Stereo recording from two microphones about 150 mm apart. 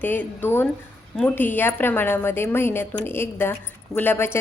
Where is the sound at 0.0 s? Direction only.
15° left (ahead or behind).